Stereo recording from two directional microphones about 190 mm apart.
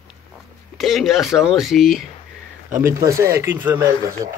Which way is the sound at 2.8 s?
15° right (ahead or behind).